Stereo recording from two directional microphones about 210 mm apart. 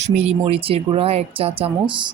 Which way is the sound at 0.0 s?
30° right (ahead or behind).